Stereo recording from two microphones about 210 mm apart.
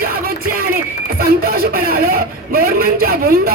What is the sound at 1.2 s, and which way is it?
Speech, 45° right (ahead or behind).